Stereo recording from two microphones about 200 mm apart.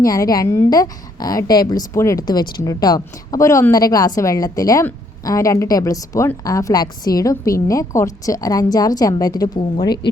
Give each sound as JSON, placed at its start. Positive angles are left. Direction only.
{"t": 0.0, "sound": "a woman's voice", "side_deg": 15}